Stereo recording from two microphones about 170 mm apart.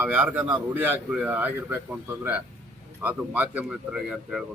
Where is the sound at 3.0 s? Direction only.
10° right (ahead or behind).